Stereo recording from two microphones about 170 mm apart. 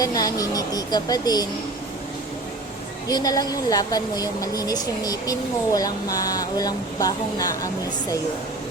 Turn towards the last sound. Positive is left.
turn(degrees=20)  # may be behind; listen again after turning